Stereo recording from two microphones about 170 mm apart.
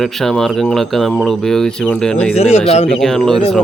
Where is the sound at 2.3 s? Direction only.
35° left (ahead or behind).